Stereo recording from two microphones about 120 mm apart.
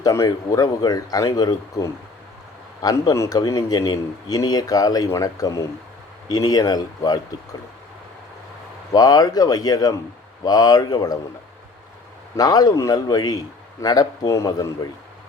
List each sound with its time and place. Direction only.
0.0 s speech: 30° left (ahead or behind)
8.9 s speech: 30° left (ahead or behind)
12.4 s speech: 30° left (ahead or behind)